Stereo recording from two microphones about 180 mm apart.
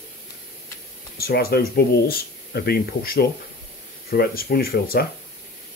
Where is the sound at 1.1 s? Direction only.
60° left (ahead or behind).